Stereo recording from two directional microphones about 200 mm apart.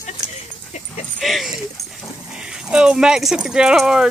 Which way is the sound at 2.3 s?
5° right (ahead or behind).